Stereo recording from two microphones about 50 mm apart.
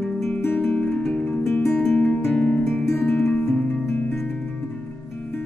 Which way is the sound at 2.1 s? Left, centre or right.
Centre.